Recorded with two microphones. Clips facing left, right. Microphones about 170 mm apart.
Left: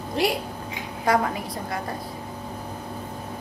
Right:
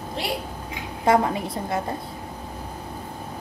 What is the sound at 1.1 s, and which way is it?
Speech, 25° right (ahead or behind).